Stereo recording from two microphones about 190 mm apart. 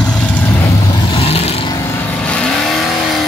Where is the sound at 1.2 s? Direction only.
30° left (ahead or behind).